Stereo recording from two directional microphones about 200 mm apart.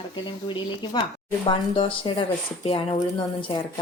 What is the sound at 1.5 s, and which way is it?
A woman's voice, 25° left (ahead or behind).